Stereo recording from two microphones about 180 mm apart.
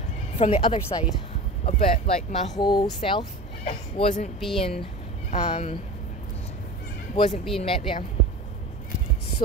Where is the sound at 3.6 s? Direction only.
45° left (ahead or behind).